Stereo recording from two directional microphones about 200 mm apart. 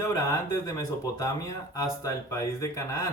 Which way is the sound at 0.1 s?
15° left (ahead or behind).